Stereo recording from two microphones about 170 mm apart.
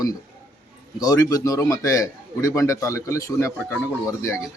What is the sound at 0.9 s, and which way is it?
Speech, 20° left (ahead or behind).